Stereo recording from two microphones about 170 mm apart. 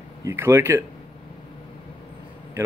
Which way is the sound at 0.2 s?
15° right (ahead or behind).